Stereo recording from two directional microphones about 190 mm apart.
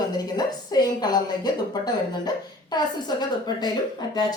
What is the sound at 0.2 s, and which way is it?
A woman's voice, 20° left (ahead or behind).